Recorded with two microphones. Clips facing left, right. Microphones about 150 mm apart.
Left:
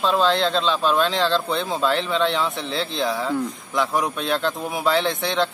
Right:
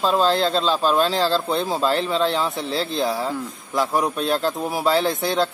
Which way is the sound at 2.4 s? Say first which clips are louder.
Right 1 dB; centre (ahead or behind).